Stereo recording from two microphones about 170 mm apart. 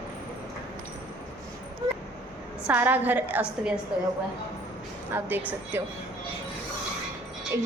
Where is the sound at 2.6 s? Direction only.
10° right (ahead or behind).